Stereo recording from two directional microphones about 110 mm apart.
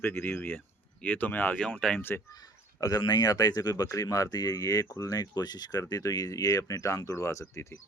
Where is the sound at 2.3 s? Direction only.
35° left (ahead or behind).